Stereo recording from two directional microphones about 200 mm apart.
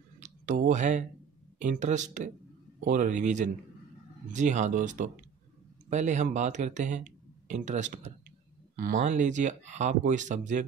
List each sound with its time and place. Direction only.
0.2 s speech: 40° right (ahead or behind)